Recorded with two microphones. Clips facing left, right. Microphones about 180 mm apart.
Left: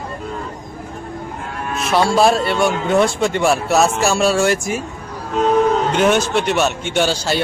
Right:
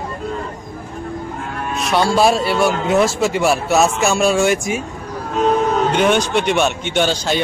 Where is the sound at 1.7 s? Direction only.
Centre (ahead or behind).